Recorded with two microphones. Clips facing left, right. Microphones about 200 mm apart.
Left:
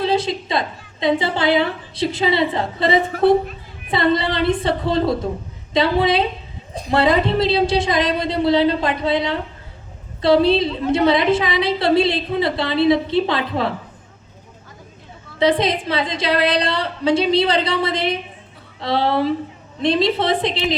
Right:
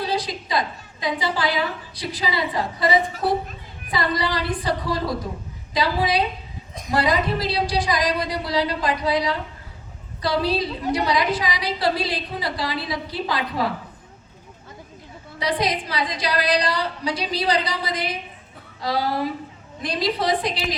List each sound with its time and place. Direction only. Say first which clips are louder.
0.0 s a woman's voice: left 6 dB; 25° left (ahead or behind)
15.4 s a woman's voice: left 7 dB; 25° left (ahead or behind)